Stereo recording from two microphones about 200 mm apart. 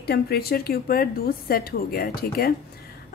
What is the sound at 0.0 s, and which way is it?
A woman's voice, 50° left (ahead or behind).